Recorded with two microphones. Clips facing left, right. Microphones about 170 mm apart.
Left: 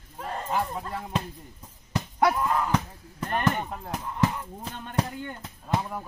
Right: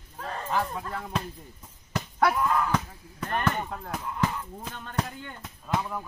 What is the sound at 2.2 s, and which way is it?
Speech, 20° left (ahead or behind).